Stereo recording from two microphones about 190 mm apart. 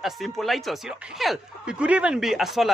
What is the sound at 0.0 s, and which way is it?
Speech, centre (ahead or behind).